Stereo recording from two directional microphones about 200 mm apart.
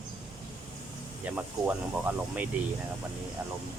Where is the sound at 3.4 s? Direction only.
5° right (ahead or behind).